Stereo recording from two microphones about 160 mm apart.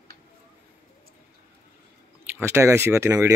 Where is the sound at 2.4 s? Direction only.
15° right (ahead or behind).